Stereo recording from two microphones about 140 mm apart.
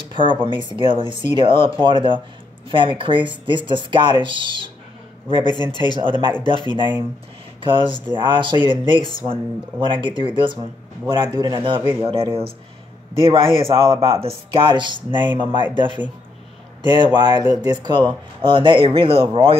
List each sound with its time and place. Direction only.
0.1 s a sound: 35° right (ahead or behind)
0.5 s speech: 35° right (ahead or behind)
5.5 s speech: 30° left (ahead or behind)
5.9 s speech: 35° right (ahead or behind)
11.8 s speech: 15° right (ahead or behind)
13.1 s speech: 40° right (ahead or behind)
16.8 s speech: 30° right (ahead or behind)